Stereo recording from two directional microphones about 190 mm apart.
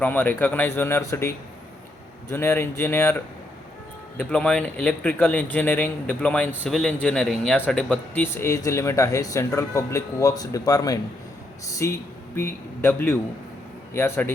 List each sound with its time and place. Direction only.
0.0 s speech: 10° left (ahead or behind)
2.3 s speech: 10° left (ahead or behind)
4.2 s speech: 5° left (ahead or behind)